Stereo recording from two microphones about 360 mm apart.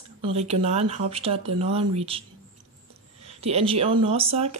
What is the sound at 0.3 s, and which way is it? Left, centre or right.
Speech, centre.